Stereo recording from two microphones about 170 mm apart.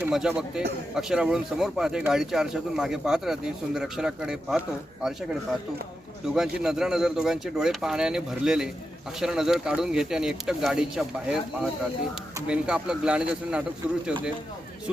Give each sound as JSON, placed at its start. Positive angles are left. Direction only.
{"t": 0.0, "sound": "speech", "side_deg": -5}